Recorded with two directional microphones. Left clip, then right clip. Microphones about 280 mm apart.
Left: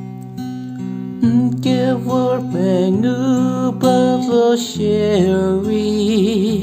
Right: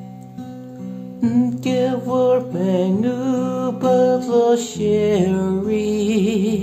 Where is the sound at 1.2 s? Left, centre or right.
Left.